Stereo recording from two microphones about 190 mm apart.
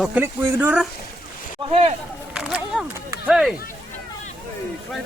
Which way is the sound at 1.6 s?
30° right (ahead or behind).